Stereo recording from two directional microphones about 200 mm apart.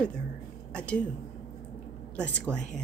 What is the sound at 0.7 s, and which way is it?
Speech, 5° left (ahead or behind).